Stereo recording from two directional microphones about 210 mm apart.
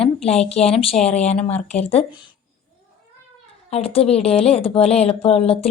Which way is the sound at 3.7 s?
25° left (ahead or behind).